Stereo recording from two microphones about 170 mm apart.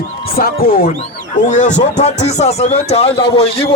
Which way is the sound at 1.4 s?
45° left (ahead or behind).